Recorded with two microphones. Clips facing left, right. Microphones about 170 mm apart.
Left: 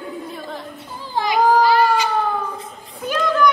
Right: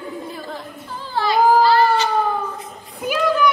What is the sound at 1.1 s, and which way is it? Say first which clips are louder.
Baby cry: right 1 dB; 15° left (ahead or behind).